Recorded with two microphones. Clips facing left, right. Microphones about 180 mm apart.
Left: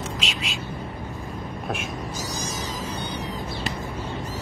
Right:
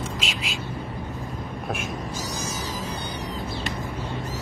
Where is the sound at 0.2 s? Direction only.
Centre (ahead or behind).